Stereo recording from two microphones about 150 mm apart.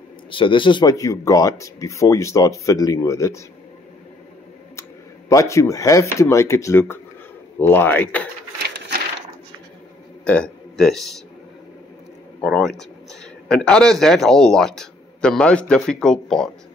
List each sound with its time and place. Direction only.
0.3 s speech: 35° left (ahead or behind)
5.3 s speech: 20° left (ahead or behind)
10.2 s a man's voice: 5° left (ahead or behind)
12.4 s speech: 5° left (ahead or behind)